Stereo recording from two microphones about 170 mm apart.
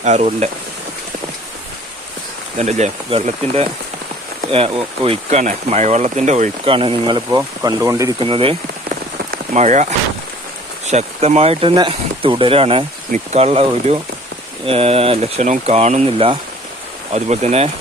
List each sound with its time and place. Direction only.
0.0 s speech: 40° right (ahead or behind)
2.6 s speech: 40° right (ahead or behind); by 8.1 s 20° right (ahead or behind)
8.2 s speech: 35° right (ahead or behind)
9.6 s speech: 40° right (ahead or behind)